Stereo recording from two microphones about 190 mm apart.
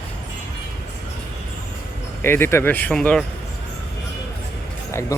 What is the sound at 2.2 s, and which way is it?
Speech, 10° left (ahead or behind).